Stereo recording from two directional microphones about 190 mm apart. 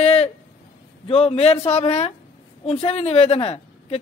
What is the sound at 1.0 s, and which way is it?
Speech, 30° left (ahead or behind).